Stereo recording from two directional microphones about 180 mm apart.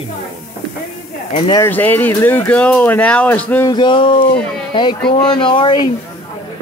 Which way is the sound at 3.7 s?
25° left (ahead or behind).